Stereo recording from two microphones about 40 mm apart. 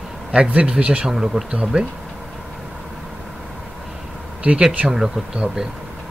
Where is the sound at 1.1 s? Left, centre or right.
Centre.